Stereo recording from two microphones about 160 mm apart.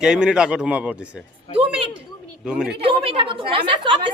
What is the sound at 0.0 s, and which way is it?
A man's voice, 5° right (ahead or behind).